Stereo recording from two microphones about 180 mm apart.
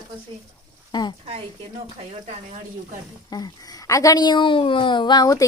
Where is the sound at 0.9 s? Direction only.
25° left (ahead or behind).